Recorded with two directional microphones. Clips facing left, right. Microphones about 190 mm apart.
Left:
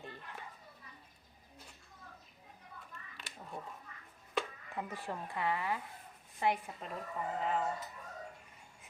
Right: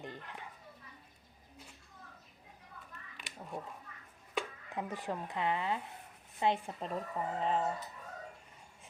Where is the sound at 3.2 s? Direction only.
15° right (ahead or behind).